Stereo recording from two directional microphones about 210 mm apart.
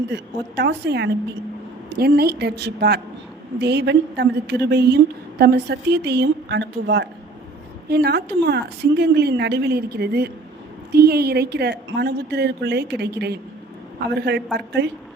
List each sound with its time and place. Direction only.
0.1 s a woman's voice: 55° right (ahead or behind)